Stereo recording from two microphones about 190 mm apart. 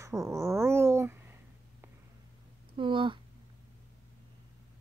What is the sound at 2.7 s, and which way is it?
Speech, 25° right (ahead or behind).